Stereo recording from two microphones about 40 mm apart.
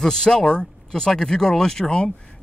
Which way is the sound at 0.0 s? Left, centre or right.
Centre.